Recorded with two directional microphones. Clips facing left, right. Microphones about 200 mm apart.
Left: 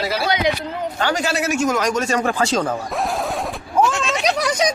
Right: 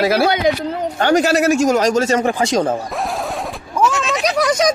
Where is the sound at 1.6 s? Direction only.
30° right (ahead or behind); by 2.7 s 15° right (ahead or behind).